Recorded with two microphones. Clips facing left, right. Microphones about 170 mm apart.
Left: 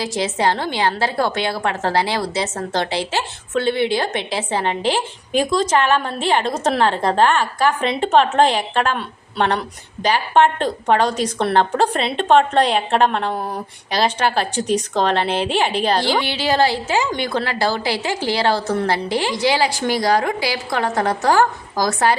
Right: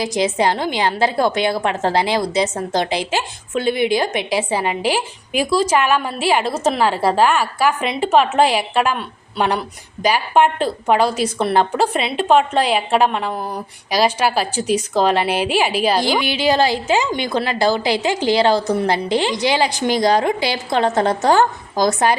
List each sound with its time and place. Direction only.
0.0 s a woman's voice: 15° right (ahead or behind)